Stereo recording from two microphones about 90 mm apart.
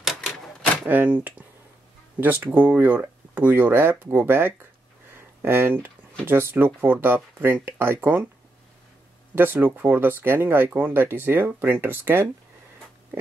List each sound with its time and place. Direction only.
0.8 s speech: 20° right (ahead or behind)
9.3 s speech: 20° right (ahead or behind)